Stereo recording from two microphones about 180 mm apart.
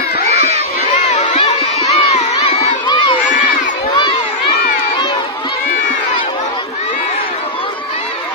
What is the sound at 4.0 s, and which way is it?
Crowd, 25° left (ahead or behind).